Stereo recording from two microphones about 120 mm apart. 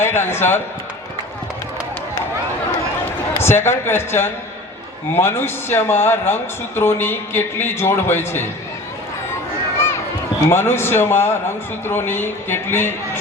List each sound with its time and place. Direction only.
0.0 s speech: 20° left (ahead or behind)
3.3 s speech: 20° left (ahead or behind)
10.5 s speech: 20° left (ahead or behind)